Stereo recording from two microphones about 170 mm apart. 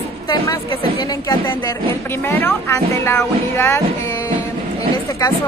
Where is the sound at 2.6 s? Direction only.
15° left (ahead or behind).